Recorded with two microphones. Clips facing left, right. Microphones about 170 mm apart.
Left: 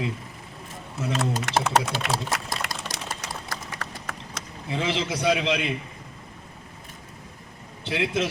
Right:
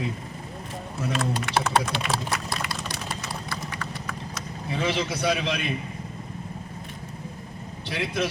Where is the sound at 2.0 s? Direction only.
85° left.